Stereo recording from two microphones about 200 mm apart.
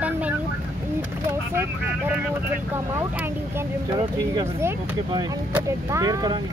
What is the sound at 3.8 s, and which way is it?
Speech, 20° right (ahead or behind).